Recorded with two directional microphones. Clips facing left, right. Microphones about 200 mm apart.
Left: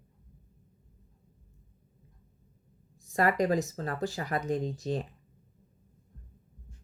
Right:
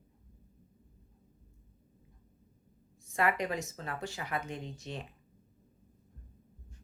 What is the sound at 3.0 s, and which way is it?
Speech, 40° left (ahead or behind).